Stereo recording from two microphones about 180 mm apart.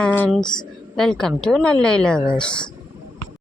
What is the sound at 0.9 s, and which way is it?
Speech, 5° left (ahead or behind).